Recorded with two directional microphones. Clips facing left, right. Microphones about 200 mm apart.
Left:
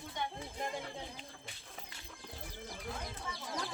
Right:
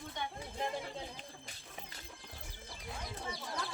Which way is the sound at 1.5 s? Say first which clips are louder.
Even; 40° right (ahead or behind).